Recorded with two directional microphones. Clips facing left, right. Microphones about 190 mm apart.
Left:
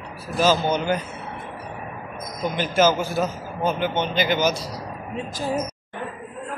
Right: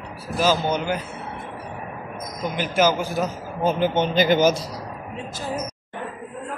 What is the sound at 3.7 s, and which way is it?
Speech, 40° right (ahead or behind).